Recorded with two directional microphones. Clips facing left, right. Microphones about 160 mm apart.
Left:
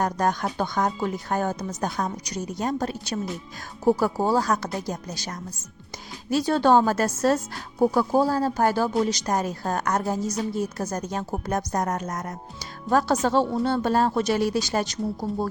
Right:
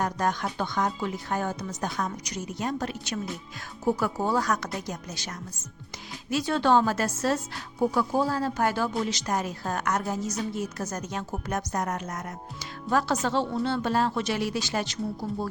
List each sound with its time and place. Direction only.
0.0 s a woman's voice: 40° left (ahead or behind)